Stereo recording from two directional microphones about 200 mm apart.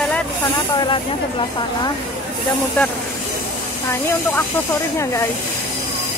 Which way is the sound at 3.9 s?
15° left (ahead or behind).